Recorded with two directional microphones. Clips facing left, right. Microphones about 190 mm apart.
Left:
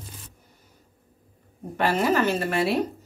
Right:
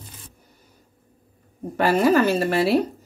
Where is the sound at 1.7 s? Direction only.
40° right (ahead or behind).